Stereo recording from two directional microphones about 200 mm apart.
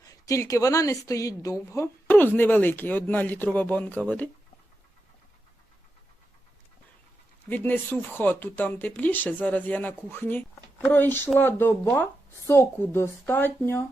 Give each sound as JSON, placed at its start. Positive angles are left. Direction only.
{"t": 0.0, "sound": "speech", "side_deg": 15}
{"t": 7.5, "sound": "speech", "side_deg": 10}